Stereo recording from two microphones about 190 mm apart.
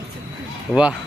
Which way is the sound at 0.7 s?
5° right (ahead or behind).